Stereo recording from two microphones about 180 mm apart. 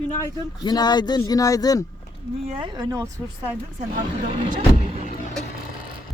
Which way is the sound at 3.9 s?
45° right (ahead or behind).